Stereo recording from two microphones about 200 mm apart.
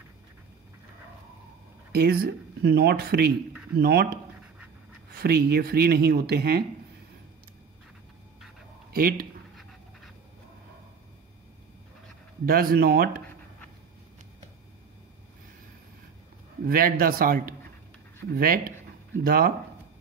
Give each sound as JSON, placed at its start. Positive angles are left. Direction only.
{"t": 1.9, "sound": "speech", "side_deg": -50}
{"t": 5.2, "sound": "speech", "side_deg": -50}
{"t": 8.9, "sound": "speech", "side_deg": -45}
{"t": 9.6, "sound": "pant", "side_deg": 0}
{"t": 12.4, "sound": "speech", "side_deg": -50}
{"t": 16.6, "sound": "speech", "side_deg": -45}